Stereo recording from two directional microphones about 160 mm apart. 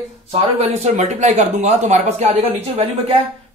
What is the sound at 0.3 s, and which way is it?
Speech, 40° right (ahead or behind).